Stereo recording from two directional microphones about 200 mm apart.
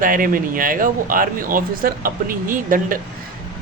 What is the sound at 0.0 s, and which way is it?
Speech, 45° right (ahead or behind).